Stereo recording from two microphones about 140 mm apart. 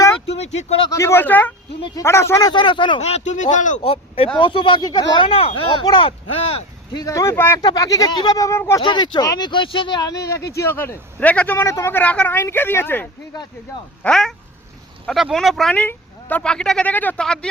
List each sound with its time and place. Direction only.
0.3 s a sound: 50° left (ahead or behind)
0.9 s a man's voice: 20° left (ahead or behind)
3.0 s speech: 50° left (ahead or behind)
3.8 s speech: 45° left (ahead or behind)
6.9 s speech: 25° left (ahead or behind)
7.6 s speech: 30° left (ahead or behind)
8.8 s speech: 35° left (ahead or behind)
10.0 s a man's voice: 25° left (ahead or behind)
14.0 s speech: 5° left (ahead or behind)
15.7 s a man's voice: 10° left (ahead or behind)